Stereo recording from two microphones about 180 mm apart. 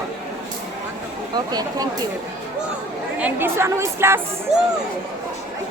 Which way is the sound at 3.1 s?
10° right (ahead or behind).